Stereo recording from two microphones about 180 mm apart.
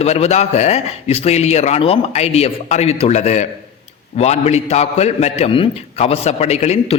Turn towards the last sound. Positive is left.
turn(degrees=35)  # may be behind; listen again after turning